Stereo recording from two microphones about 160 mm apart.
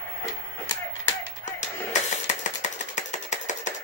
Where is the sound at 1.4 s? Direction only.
50° left (ahead or behind).